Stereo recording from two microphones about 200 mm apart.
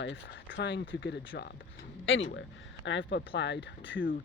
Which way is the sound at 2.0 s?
75° left (ahead or behind).